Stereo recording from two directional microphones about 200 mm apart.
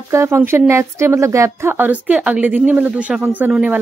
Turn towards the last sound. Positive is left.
turn(degrees=-5)  # may be behind; listen again after turning